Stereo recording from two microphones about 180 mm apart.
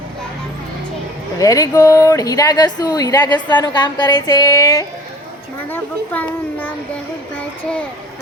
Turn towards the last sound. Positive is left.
turn(degrees=5)  # may be behind; listen again after turning